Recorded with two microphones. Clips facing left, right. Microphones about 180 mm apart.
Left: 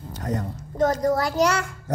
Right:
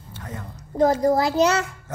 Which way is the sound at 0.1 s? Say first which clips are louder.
Left 8 dB; 40° left (ahead or behind).